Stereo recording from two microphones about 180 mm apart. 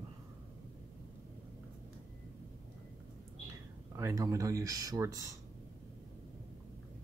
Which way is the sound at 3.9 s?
15° right (ahead or behind).